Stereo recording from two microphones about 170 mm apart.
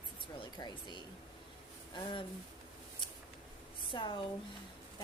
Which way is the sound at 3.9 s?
30° left (ahead or behind).